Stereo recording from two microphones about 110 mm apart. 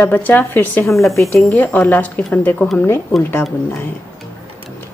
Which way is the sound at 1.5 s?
15° left (ahead or behind).